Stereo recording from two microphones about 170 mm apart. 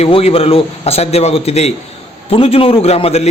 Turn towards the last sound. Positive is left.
turn(degrees=35)  # may be behind; listen again after turning